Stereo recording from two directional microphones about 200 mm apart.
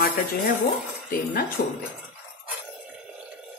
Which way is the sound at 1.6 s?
50° left (ahead or behind).